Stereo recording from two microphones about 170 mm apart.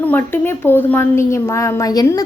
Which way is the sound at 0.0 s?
10° left (ahead or behind).